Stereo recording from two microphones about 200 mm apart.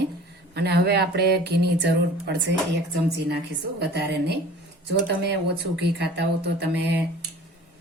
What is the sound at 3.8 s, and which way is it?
Speech, 55° right (ahead or behind).